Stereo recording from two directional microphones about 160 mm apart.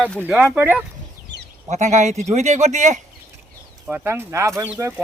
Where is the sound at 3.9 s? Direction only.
10° right (ahead or behind).